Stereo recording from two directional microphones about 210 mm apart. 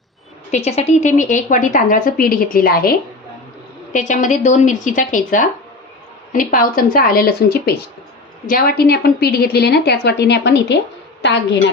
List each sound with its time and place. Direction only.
0.5 s a woman's voice: 30° left (ahead or behind)
3.9 s a woman's voice: 35° left (ahead or behind); by 10.8 s 55° left (ahead or behind)